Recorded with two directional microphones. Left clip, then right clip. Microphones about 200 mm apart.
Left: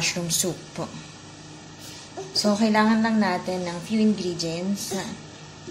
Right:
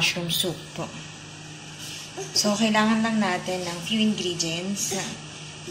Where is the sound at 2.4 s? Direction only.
15° left (ahead or behind).